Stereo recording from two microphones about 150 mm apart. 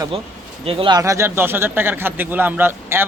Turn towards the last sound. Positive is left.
turn(degrees=-15)  # may be behind; listen again after turning